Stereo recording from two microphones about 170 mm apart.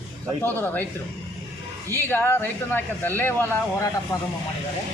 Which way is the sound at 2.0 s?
15° left (ahead or behind).